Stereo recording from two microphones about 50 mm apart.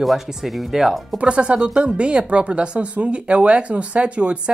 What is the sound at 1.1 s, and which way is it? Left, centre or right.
Speech, right.